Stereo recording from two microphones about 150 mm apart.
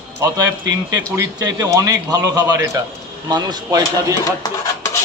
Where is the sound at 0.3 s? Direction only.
25° right (ahead or behind).